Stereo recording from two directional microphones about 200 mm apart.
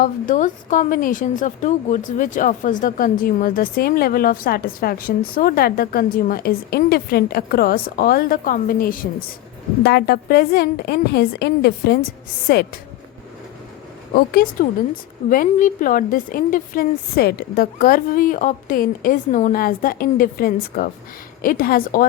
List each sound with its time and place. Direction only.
0.0 s a woman's voice: 40° left (ahead or behind)
14.4 s a woman's voice: 45° left (ahead or behind)